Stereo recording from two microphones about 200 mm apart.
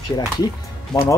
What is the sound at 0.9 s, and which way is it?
Speech, 15° left (ahead or behind).